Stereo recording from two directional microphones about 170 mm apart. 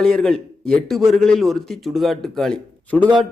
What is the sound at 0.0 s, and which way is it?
A man's voice, 5° left (ahead or behind).